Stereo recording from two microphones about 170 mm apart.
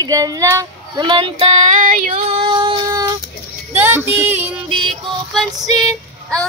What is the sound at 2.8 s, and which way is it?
Music, 25° right (ahead or behind).